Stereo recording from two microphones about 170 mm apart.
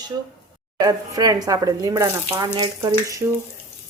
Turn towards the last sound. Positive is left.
turn(degrees=-25)  # may be behind; listen again after turning